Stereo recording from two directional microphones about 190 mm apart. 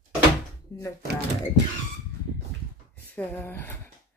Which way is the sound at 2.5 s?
65° right (ahead or behind).